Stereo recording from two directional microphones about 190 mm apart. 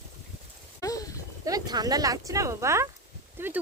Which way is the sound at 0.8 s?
20° left (ahead or behind).